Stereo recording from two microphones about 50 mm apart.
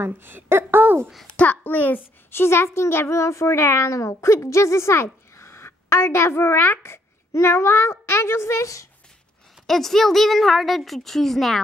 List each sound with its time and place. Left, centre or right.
0.0 s a woman's voice: right
1.2 s a child's voice: left
2.3 s a child's voice: left
9.7 s a woman's voice: centre